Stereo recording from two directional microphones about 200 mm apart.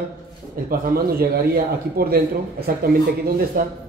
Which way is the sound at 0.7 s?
50° right (ahead or behind).